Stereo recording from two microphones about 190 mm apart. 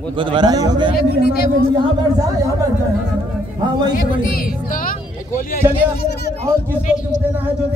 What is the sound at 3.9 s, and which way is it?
Speech, 50° left (ahead or behind).